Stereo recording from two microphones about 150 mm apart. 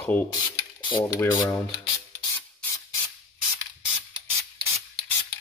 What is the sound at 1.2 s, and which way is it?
Speech, 15° left (ahead or behind).